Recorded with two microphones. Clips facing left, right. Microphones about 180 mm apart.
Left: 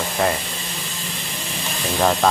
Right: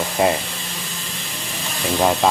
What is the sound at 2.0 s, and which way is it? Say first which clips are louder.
Speech: even; 10° right (ahead or behind).